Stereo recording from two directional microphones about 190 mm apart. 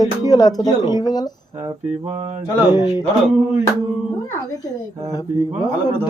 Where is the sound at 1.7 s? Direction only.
35° right (ahead or behind).